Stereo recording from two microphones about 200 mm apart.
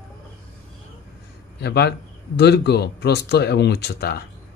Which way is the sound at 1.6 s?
55° left (ahead or behind).